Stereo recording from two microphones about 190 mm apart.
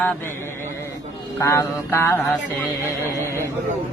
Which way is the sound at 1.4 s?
15° left (ahead or behind).